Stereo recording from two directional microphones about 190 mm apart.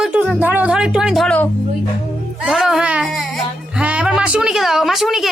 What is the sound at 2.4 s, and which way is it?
Speech, centre (ahead or behind).